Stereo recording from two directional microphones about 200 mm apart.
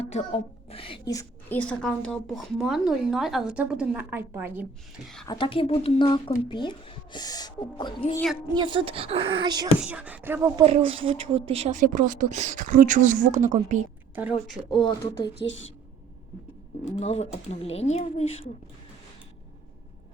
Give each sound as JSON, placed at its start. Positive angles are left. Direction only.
{"t": 0.0, "sound": "a woman's voice", "side_deg": 30}
{"t": 5.3, "sound": "speech", "side_deg": 25}
{"t": 8.5, "sound": "speech", "side_deg": -25}
{"t": 9.8, "sound": "speech", "side_deg": -5}
{"t": 10.6, "sound": "a woman's voice", "side_deg": -30}
{"t": 14.7, "sound": "speech", "side_deg": 25}
{"t": 15.4, "sound": "a woman's voice", "side_deg": 65}
{"t": 16.8, "sound": "speech", "side_deg": 35}